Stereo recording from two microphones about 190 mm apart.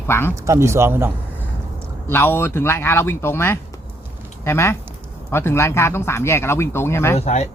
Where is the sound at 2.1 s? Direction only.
10° left (ahead or behind).